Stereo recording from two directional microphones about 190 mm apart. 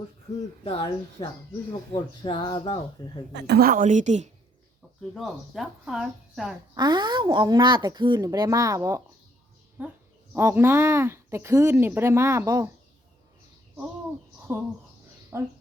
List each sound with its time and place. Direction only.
0.6 s speech: 30° left (ahead or behind)
3.3 s a woman's voice: 60° right (ahead or behind); by 4.3 s 40° right (ahead or behind)
5.1 s speech: centre (ahead or behind)
6.7 s speech: 25° right (ahead or behind)
14.5 s speech: 10° right (ahead or behind)